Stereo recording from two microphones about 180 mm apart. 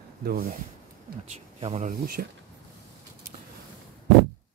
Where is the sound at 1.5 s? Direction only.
35° right (ahead or behind).